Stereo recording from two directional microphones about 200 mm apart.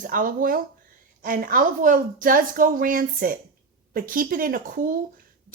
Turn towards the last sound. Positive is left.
turn(degrees=-45)  # may be behind; listen again after turning